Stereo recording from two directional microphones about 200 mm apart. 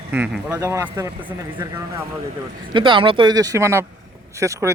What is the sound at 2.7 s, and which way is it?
A man's voice, 25° right (ahead or behind).